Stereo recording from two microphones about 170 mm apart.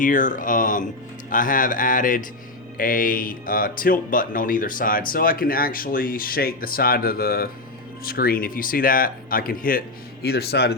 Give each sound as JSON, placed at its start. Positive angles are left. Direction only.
{"t": 0.0, "sound": "speech", "side_deg": 50}
{"t": 10.2, "sound": "speech", "side_deg": 70}